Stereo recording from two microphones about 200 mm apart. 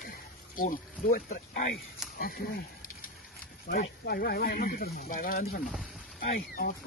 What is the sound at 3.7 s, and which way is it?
Speech, 50° left (ahead or behind).